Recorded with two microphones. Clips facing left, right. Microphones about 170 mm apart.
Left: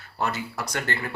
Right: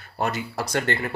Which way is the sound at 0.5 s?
30° right (ahead or behind).